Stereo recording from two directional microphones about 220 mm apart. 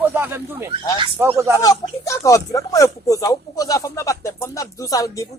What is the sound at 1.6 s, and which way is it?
Speech, 15° left (ahead or behind).